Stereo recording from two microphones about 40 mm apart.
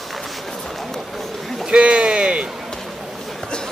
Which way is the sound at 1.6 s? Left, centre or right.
Right.